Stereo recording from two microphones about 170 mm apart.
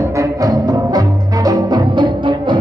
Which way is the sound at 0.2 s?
20° right (ahead or behind).